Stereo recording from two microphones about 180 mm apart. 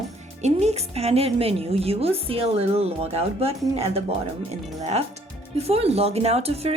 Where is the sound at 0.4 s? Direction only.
35° right (ahead or behind).